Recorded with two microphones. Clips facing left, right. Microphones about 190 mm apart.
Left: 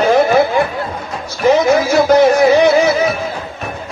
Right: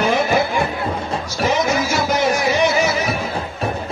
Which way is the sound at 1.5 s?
60° left (ahead or behind).